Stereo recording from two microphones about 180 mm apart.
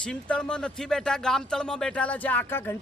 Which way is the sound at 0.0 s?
5° left (ahead or behind).